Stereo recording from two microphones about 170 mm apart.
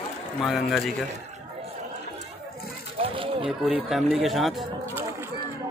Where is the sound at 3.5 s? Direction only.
5° right (ahead or behind).